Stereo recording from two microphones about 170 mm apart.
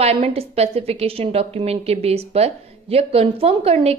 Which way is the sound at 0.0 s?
35° right (ahead or behind).